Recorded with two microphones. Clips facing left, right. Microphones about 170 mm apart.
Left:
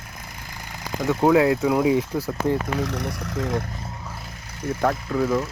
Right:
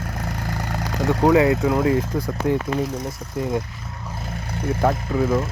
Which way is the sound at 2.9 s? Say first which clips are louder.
Even; 75° left (ahead or behind).